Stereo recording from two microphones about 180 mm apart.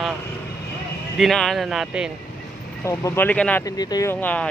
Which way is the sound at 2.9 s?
15° left (ahead or behind).